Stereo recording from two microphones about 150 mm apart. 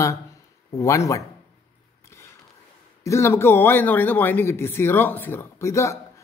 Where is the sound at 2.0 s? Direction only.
20° left (ahead or behind).